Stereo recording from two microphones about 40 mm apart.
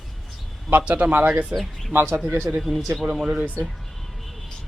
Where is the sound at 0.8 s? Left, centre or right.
Right.